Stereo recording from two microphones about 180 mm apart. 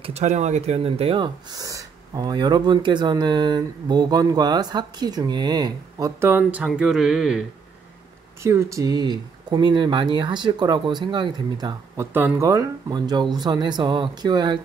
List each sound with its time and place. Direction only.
0.0 s speech: 40° right (ahead or behind); by 7.4 s centre (ahead or behind)
8.4 s speech: 15° right (ahead or behind)